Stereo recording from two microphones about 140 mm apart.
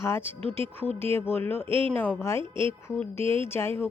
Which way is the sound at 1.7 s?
40° right (ahead or behind).